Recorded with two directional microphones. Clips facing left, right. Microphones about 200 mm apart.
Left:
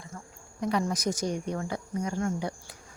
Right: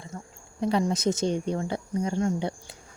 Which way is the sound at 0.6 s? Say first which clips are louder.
Right 4 dB; 30° right (ahead or behind).